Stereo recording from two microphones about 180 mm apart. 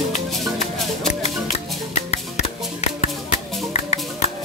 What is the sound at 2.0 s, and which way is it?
Music, 40° left (ahead or behind).